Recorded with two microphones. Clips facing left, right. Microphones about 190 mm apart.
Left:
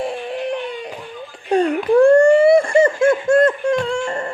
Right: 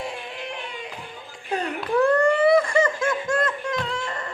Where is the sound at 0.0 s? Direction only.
35° left (ahead or behind).